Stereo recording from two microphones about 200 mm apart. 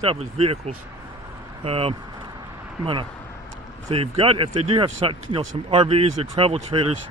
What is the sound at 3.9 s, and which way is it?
Speech, 30° right (ahead or behind).